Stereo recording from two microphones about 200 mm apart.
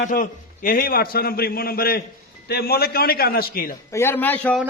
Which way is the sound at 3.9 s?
10° left (ahead or behind).